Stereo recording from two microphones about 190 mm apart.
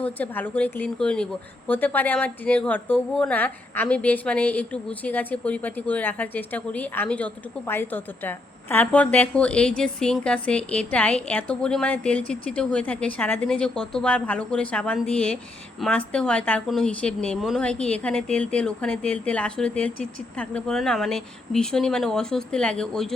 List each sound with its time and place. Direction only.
0.0 s a woman's voice: 10° left (ahead or behind)